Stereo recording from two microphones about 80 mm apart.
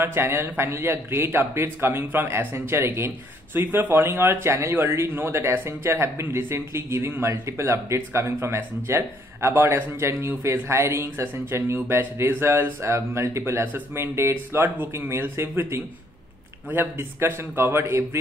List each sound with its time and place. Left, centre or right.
0.0 s a man's voice: right